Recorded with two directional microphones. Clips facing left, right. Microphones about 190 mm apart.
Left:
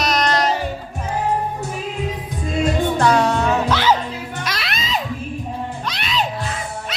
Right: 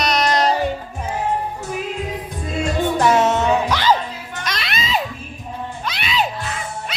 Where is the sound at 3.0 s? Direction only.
20° right (ahead or behind).